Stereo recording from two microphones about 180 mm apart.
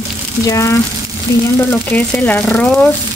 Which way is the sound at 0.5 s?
15° left (ahead or behind).